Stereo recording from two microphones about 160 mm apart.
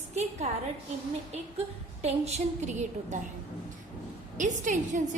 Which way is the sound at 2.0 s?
45° right (ahead or behind).